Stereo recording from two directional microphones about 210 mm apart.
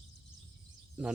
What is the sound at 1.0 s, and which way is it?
Speech, 5° right (ahead or behind).